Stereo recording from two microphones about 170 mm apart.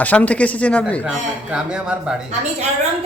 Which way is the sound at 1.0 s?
5° right (ahead or behind).